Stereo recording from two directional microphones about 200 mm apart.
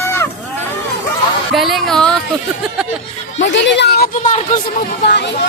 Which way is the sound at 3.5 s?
65° left (ahead or behind).